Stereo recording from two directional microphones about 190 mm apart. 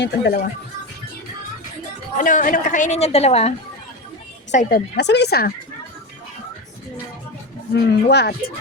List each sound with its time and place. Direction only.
0.0 s a woman's voice: 50° left (ahead or behind)
2.1 s a woman's voice: 45° left (ahead or behind)
4.5 s speech: 55° left (ahead or behind)
7.7 s speech: 60° left (ahead or behind)